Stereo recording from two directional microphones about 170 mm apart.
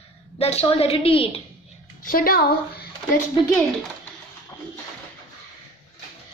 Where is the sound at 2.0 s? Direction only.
55° left (ahead or behind).